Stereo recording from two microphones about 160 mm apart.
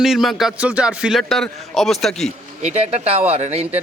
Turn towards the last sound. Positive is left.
turn(degrees=-40)  # may be behind; listen again after turning